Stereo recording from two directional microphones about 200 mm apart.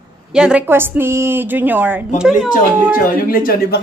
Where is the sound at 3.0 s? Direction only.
45° left (ahead or behind).